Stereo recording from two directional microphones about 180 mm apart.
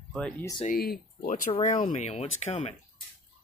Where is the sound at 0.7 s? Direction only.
60° left (ahead or behind).